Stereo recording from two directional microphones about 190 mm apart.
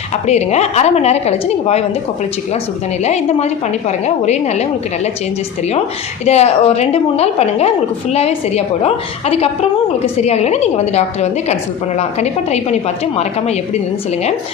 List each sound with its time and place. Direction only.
0.3 s a woman's voice: 35° left (ahead or behind)
3.0 s a woman's voice: 35° left (ahead or behind)
6.2 s a woman's voice: 35° left (ahead or behind)